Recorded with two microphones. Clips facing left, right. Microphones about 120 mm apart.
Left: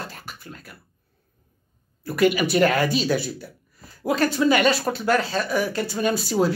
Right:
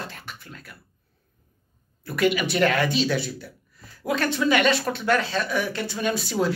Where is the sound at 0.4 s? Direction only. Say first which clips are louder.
Left 2 dB; 40° left (ahead or behind).